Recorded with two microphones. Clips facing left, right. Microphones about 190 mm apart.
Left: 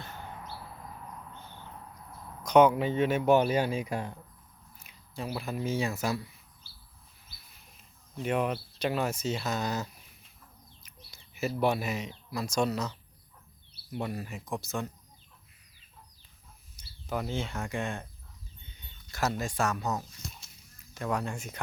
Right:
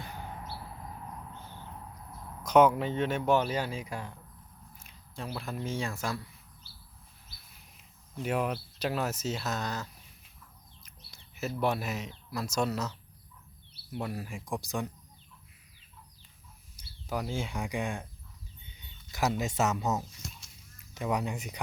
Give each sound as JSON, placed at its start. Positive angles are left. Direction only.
{"t": 2.4, "sound": "speech", "side_deg": -5}
{"t": 4.8, "sound": "speech", "side_deg": 5}
{"t": 8.1, "sound": "speech", "side_deg": -5}
{"t": 16.7, "sound": "speech", "side_deg": -5}
{"t": 20.9, "sound": "speech", "side_deg": -15}